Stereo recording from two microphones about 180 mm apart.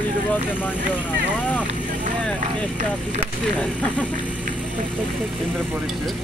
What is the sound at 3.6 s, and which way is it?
Speech, 5° left (ahead or behind).